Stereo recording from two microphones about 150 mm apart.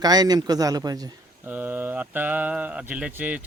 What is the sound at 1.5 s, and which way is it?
Speech, 10° right (ahead or behind).